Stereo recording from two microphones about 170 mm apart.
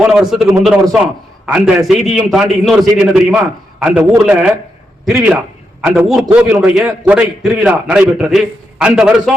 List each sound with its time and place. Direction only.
0.0 s a man's voice: centre (ahead or behind)